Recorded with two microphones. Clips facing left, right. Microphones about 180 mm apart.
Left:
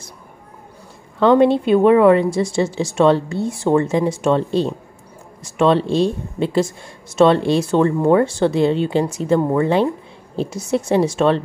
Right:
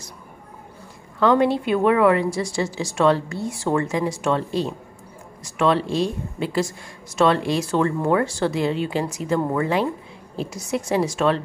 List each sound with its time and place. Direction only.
1.2 s speech: 25° left (ahead or behind)